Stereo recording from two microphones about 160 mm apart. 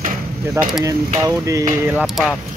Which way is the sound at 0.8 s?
20° right (ahead or behind).